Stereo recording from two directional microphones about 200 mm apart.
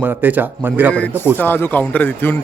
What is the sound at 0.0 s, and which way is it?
Speech, 10° right (ahead or behind).